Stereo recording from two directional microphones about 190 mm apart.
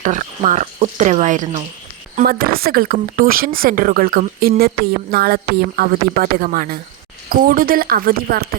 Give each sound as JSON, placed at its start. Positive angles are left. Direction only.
{"t": 0.0, "sound": "speech", "side_deg": -40}
{"t": 2.1, "sound": "speech", "side_deg": -50}